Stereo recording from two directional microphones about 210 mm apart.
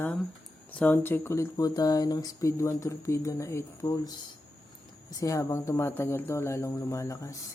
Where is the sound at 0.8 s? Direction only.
10° left (ahead or behind).